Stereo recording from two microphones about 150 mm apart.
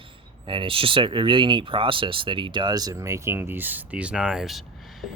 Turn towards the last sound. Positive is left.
turn(degrees=0)  # may be behind; listen again after turning